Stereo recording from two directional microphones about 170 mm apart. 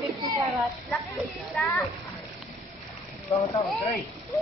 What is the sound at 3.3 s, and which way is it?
Speech, 35° left (ahead or behind).